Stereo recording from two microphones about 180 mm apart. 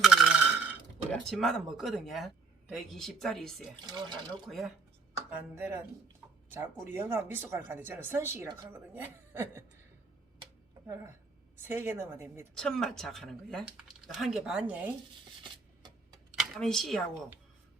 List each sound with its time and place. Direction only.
0.0 s a sound: centre (ahead or behind)
1.1 s speech: centre (ahead or behind)
3.8 s speech: 25° right (ahead or behind)
4.4 s speech: centre (ahead or behind)
5.1 s speech: 10° right (ahead or behind)
11.5 s speech: 10° right (ahead or behind)
12.5 s speech: 5° left (ahead or behind)
16.3 s speech: centre (ahead or behind)